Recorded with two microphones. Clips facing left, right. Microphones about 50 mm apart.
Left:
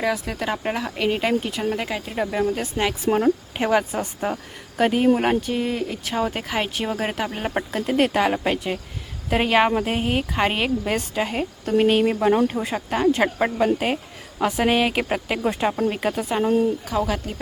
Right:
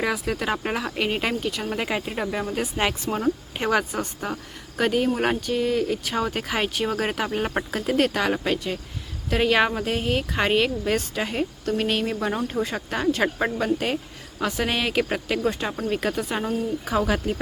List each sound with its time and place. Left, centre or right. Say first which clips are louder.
0.0 s speech: left 1 dB; centre
1.4 s speech: left 3 dB; centre
1.7 s speech: even; centre
3.1 s speech: left 9 dB; left
3.6 s speech: left 1 dB; centre
10.2 s speech: even; centre
11.7 s speech: left 8 dB; left; by 16.5 s centre
17.0 s speech: right 3 dB; centre